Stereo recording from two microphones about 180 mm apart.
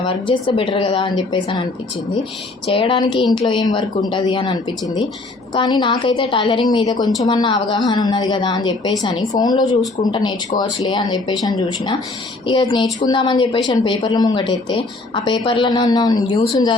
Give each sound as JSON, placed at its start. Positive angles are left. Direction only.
{"t": 0.0, "sound": "speech", "side_deg": 30}
{"t": 2.6, "sound": "speech", "side_deg": 30}
{"t": 5.5, "sound": "speech", "side_deg": 25}
{"t": 12.5, "sound": "speech", "side_deg": 25}